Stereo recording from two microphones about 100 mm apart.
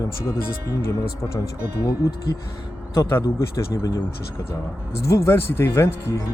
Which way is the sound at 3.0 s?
25° left (ahead or behind).